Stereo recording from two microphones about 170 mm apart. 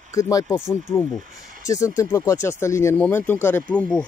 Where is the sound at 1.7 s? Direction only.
20° left (ahead or behind).